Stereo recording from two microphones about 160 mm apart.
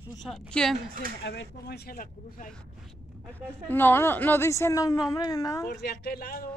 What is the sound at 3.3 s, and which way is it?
A woman's voice, 10° left (ahead or behind).